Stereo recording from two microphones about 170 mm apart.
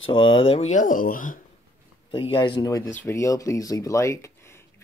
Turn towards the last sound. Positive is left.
turn(degrees=15)  # may be behind; listen again after turning